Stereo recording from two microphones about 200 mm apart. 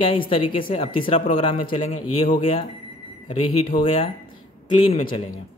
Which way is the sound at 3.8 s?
30° left (ahead or behind).